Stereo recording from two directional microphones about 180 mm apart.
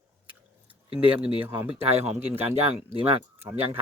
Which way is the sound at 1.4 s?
10° right (ahead or behind).